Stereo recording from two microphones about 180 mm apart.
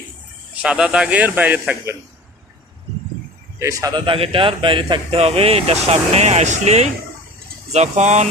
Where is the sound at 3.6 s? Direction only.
20° right (ahead or behind).